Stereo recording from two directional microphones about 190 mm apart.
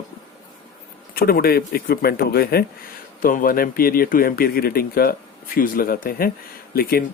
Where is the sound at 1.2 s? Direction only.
50° left (ahead or behind).